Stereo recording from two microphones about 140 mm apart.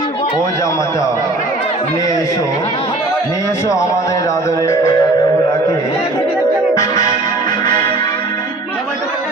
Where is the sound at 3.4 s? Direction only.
20° left (ahead or behind).